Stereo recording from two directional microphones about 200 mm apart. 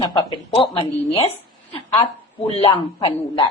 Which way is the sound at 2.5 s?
30° left (ahead or behind).